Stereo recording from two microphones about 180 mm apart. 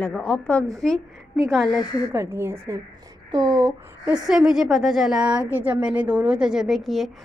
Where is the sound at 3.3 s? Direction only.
20° right (ahead or behind).